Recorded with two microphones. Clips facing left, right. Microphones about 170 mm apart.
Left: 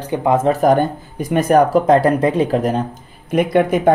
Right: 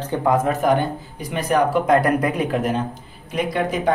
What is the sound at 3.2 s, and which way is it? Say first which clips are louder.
Speech: left 8 dB; 55° left (ahead or behind).